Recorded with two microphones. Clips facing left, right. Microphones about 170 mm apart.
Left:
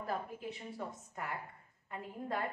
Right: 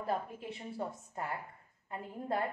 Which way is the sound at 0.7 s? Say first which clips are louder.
Right 4 dB; 30° right (ahead or behind).